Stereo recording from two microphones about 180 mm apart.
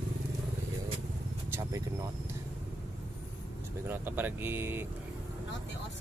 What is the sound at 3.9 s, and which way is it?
Speech, 10° right (ahead or behind).